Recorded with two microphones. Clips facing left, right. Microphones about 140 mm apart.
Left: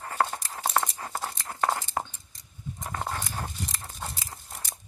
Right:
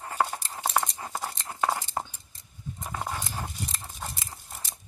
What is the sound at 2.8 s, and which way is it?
Dog, 5° right (ahead or behind).